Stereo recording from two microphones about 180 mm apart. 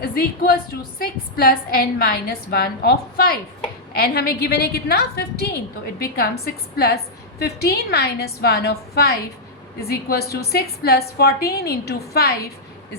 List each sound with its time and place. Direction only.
0.0 s a woman's voice: 55° left (ahead or behind)